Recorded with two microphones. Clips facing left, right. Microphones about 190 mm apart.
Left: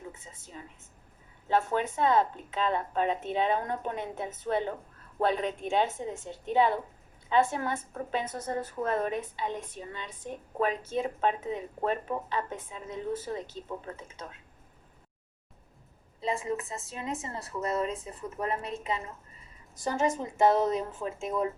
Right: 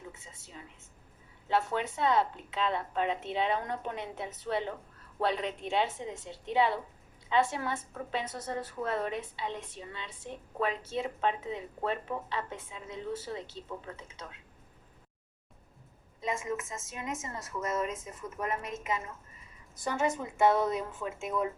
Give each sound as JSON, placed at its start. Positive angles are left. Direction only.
{"t": 0.2, "sound": "a woman's voice", "side_deg": 50}
{"t": 16.2, "sound": "a woman's voice", "side_deg": 35}